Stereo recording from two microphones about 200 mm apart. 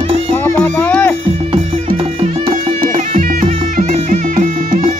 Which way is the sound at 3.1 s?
40° right (ahead or behind).